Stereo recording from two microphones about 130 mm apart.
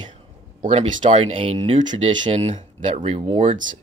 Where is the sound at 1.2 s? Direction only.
55° right (ahead or behind).